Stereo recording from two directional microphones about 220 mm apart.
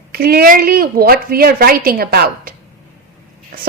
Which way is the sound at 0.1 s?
45° right (ahead or behind).